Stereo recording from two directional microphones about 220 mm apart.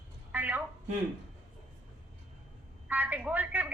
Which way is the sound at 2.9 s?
5° right (ahead or behind).